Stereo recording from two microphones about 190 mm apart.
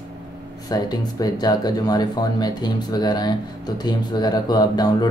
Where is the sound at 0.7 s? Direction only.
20° left (ahead or behind).